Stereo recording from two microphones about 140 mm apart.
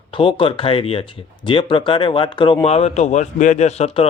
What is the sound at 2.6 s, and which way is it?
Speech, 50° left (ahead or behind).